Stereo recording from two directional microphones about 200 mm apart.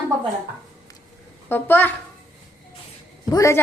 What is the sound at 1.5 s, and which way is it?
Speech, 10° left (ahead or behind).